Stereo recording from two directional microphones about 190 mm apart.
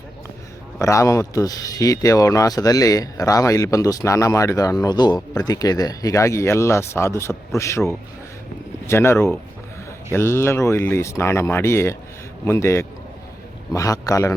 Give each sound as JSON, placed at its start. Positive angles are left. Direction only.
{"t": 0.8, "sound": "speech", "side_deg": 15}